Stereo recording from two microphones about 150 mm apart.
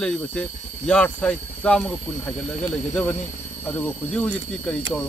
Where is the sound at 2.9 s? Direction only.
10° left (ahead or behind).